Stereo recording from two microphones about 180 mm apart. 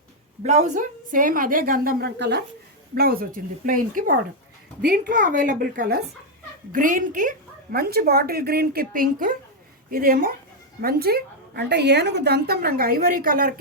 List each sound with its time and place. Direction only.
0.4 s a woman's voice: 40° right (ahead or behind); by 2.4 s 70° right (ahead or behind)
2.9 s a woman's voice: 55° right (ahead or behind)